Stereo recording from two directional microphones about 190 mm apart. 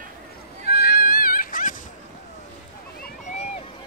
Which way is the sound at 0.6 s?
55° left (ahead or behind).